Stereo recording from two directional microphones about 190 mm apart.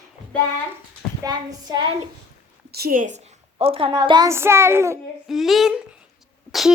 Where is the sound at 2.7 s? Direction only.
55° right (ahead or behind); by 5.0 s 15° right (ahead or behind).